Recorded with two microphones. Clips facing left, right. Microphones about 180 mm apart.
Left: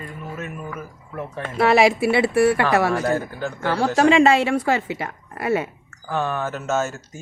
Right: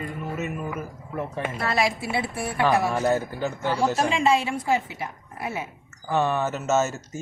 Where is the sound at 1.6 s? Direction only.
75° left (ahead or behind).